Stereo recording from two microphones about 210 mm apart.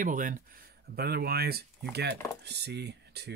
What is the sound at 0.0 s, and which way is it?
Speech, 40° right (ahead or behind).